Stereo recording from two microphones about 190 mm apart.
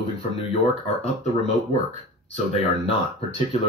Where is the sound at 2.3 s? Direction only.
35° left (ahead or behind).